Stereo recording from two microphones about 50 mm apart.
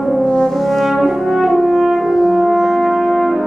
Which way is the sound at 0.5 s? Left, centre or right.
Centre.